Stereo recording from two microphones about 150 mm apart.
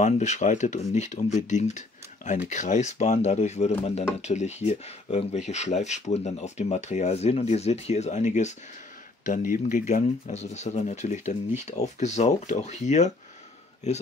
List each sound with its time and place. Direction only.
0.0 s speech: 50° left (ahead or behind)
9.2 s speech: 60° left (ahead or behind)
10.0 s speech: 50° left (ahead or behind)